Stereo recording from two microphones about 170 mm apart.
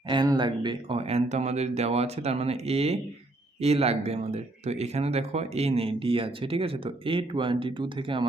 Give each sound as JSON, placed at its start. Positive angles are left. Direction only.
{"t": 0.1, "sound": "speech", "side_deg": -25}